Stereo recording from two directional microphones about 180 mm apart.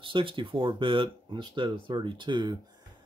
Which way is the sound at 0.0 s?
30° right (ahead or behind).